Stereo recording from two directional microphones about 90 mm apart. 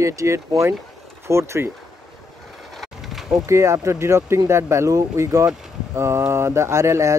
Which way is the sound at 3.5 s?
35° right (ahead or behind).